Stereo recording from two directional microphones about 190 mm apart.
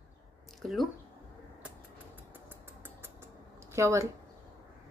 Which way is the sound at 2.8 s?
10° right (ahead or behind).